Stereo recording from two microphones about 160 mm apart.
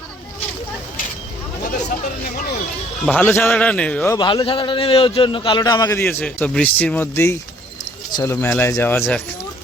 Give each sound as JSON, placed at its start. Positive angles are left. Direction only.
{"t": 3.1, "sound": "speech", "side_deg": 10}
{"t": 4.1, "sound": "a man's voice", "side_deg": 25}
{"t": 6.0, "sound": "speech", "side_deg": 10}